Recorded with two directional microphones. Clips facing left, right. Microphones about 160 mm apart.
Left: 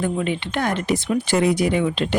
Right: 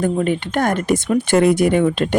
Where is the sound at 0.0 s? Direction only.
45° right (ahead or behind).